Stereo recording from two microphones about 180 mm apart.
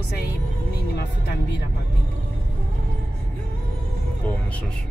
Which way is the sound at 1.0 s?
65° left (ahead or behind).